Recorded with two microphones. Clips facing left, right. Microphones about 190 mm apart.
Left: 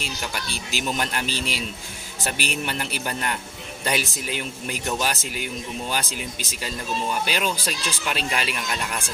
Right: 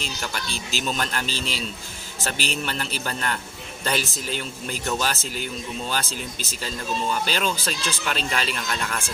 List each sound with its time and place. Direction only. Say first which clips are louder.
0.0 s speech: even; 10° left (ahead or behind)